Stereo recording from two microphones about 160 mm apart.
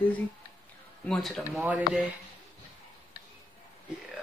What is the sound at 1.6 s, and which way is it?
Speech, 10° right (ahead or behind).